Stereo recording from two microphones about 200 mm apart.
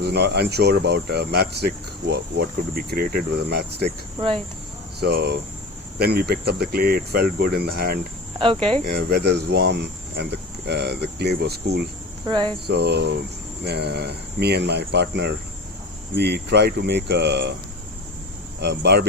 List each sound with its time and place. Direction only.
0.0 s speech: 55° right (ahead or behind)
4.9 s speech: 55° right (ahead or behind)
12.2 s cricket: 20° right (ahead or behind)
12.6 s speech: 55° right (ahead or behind)
18.6 s speech: 60° right (ahead or behind)